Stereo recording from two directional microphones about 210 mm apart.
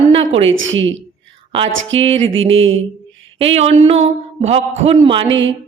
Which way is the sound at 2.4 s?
65° right (ahead or behind).